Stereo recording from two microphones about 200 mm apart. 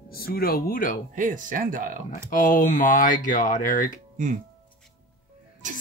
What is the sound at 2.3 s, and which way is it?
Speech, 40° left (ahead or behind).